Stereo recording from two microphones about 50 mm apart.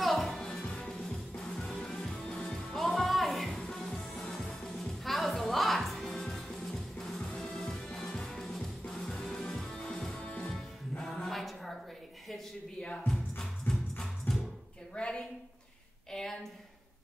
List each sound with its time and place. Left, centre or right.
0.0 s music: centre
0.7 s music: centre
2.7 s music: centre
3.6 s music: centre
11.2 s music: centre
13.0 s music: centre
15.0 s a sound: left
16.1 s a sound: centre